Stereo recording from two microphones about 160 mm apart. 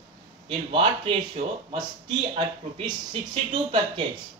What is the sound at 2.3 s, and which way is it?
Speech, 30° right (ahead or behind).